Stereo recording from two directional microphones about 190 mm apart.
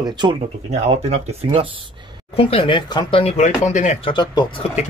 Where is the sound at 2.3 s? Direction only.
30° left (ahead or behind).